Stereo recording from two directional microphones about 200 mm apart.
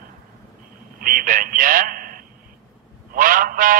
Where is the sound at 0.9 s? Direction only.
45° right (ahead or behind).